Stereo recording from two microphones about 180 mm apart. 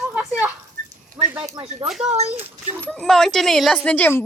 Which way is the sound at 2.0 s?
35° right (ahead or behind).